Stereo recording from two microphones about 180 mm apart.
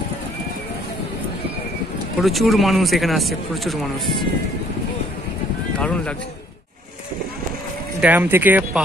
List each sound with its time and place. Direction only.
2.2 s speech: centre (ahead or behind)
5.8 s speech: 5° left (ahead or behind)
8.0 s speech: 10° right (ahead or behind)